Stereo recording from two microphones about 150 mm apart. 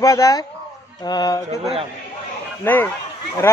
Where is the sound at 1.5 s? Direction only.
45° right (ahead or behind).